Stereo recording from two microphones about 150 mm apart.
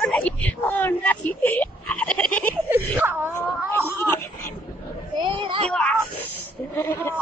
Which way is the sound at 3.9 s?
15° left (ahead or behind).